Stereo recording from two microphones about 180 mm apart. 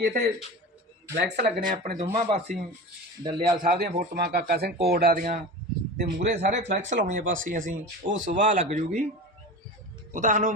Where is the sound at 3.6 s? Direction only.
50° right (ahead or behind).